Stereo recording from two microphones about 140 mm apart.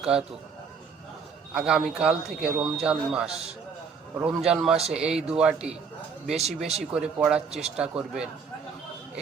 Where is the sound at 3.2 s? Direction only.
45° right (ahead or behind).